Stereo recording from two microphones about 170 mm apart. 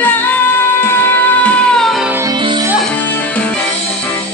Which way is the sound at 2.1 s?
25° right (ahead or behind).